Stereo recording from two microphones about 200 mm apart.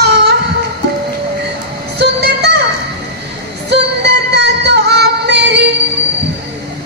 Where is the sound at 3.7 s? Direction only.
55° right (ahead or behind).